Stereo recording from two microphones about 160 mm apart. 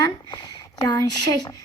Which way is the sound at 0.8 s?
25° left (ahead or behind).